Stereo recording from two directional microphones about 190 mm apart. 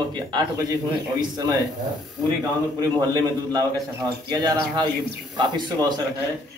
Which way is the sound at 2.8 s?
20° right (ahead or behind).